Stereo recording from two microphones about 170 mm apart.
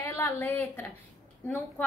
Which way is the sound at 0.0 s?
15° left (ahead or behind).